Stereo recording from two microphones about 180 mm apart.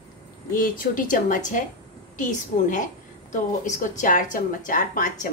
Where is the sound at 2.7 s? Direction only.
45° left (ahead or behind).